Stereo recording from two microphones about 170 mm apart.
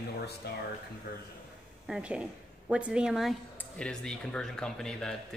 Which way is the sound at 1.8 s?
5° right (ahead or behind).